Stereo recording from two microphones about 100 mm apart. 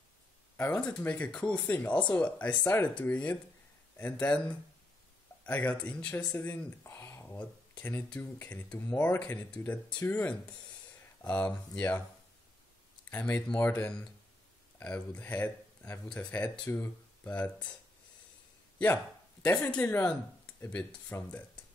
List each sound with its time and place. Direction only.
0.7 s speech: 15° left (ahead or behind)
13.1 s speech: 15° left (ahead or behind)
19.4 s speech: 20° left (ahead or behind)
20.7 s speech: 15° left (ahead or behind)